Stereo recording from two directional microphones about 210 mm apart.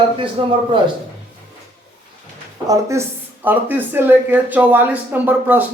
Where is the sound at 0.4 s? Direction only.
25° right (ahead or behind).